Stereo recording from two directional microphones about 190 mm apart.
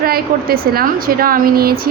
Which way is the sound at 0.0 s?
50° right (ahead or behind).